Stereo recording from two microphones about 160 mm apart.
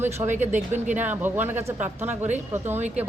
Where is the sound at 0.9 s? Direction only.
10° right (ahead or behind).